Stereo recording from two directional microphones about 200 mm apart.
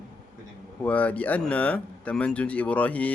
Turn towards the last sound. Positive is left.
turn(degrees=5)  # may be behind; listen again after turning